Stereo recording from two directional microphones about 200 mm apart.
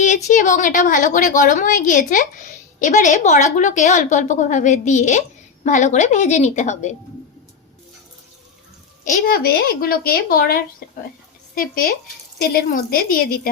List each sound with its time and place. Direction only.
0.3 s a woman's voice: 40° left (ahead or behind)
9.0 s a woman's voice: 45° left (ahead or behind)